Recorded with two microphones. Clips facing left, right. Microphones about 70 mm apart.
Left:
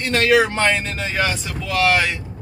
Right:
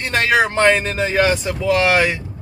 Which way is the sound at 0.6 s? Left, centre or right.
Right.